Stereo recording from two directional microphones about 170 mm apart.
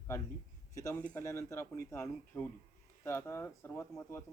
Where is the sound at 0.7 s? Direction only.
20° left (ahead or behind).